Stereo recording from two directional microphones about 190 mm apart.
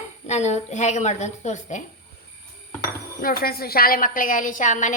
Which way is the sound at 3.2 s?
50° left (ahead or behind).